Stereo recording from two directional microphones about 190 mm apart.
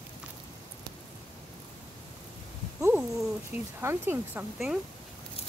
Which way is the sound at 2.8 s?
10° right (ahead or behind).